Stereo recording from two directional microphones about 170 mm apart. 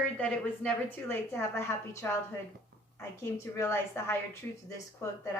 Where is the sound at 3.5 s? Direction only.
15° left (ahead or behind).